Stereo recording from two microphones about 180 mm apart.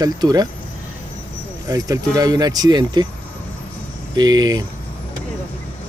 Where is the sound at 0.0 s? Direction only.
20° right (ahead or behind).